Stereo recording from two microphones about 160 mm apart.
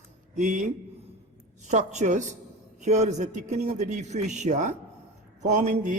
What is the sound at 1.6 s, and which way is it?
Speech, 45° right (ahead or behind).